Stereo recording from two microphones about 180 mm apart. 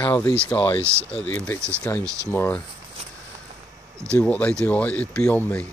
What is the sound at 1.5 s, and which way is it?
Speech, 15° right (ahead or behind).